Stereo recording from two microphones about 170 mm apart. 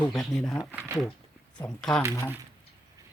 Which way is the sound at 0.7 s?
10° right (ahead or behind).